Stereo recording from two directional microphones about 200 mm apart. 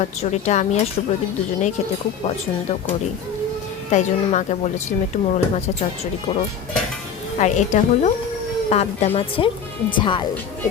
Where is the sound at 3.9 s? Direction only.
35° left (ahead or behind).